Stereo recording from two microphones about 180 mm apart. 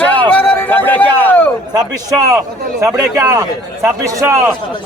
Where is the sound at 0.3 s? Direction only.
10° left (ahead or behind).